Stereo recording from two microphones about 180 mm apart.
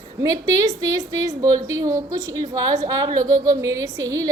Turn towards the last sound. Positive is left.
turn(degrees=-20)  # may be behind; listen again after turning